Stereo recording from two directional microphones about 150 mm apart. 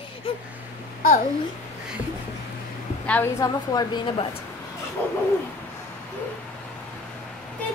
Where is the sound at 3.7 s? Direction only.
30° left (ahead or behind).